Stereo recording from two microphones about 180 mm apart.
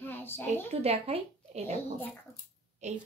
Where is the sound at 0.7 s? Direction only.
35° right (ahead or behind).